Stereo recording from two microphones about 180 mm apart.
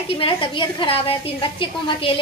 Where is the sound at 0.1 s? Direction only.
30° left (ahead or behind).